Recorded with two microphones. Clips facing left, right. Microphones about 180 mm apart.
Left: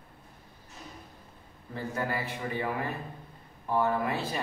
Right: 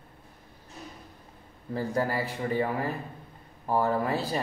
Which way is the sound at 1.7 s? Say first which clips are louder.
Right 5 dB; 35° right (ahead or behind).